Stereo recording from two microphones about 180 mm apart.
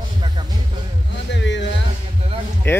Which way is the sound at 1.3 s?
85° left.